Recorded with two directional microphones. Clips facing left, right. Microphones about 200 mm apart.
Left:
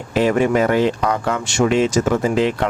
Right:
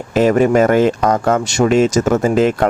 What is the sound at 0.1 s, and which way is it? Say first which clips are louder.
Speech: right 4 dB; 45° right (ahead or behind).